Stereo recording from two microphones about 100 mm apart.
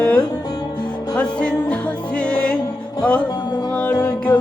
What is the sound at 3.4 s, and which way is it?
Music, 45° left (ahead or behind).